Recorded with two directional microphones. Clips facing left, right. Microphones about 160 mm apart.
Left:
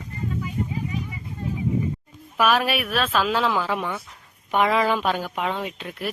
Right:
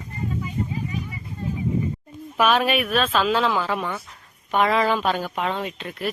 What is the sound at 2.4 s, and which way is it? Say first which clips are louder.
A woman's voice: right 1 dB; 5° left (ahead or behind).